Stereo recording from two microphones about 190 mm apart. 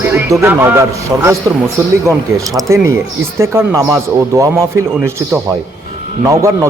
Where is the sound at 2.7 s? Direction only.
15° right (ahead or behind).